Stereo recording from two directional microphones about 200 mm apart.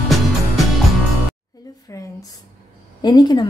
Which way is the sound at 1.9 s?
15° left (ahead or behind).